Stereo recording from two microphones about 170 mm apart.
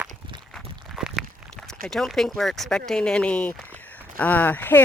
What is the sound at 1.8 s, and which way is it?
Speech, centre (ahead or behind).